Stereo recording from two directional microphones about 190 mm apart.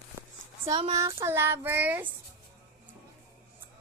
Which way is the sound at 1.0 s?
15° right (ahead or behind).